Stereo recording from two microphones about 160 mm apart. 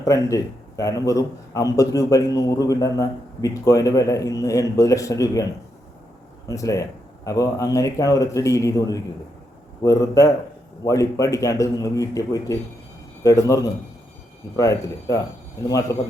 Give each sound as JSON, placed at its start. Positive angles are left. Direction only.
{"t": 0.0, "sound": "a man's voice", "side_deg": 20}
{"t": 6.5, "sound": "a man's voice", "side_deg": 20}